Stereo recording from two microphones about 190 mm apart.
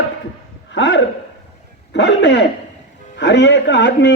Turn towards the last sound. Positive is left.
turn(degrees=65)  # may be behind; listen again after turning